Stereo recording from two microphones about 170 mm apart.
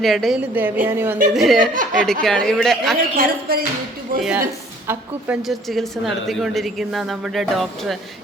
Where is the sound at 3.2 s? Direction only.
60° right (ahead or behind).